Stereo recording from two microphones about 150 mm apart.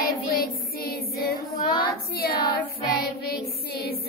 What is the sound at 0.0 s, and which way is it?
Child singing, 85° left.